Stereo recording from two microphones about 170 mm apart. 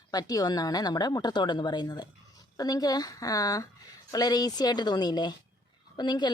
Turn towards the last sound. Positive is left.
turn(degrees=25)  # may be behind; listen again after turning